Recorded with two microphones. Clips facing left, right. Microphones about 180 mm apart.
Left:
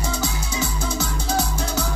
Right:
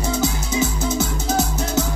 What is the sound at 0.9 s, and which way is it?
Music, 25° right (ahead or behind).